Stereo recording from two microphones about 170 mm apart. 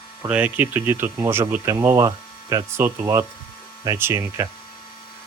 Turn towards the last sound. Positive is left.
turn(degrees=-15)  # may be behind; listen again after turning